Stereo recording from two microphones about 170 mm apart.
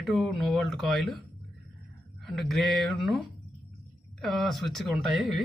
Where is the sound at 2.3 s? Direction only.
Centre (ahead or behind).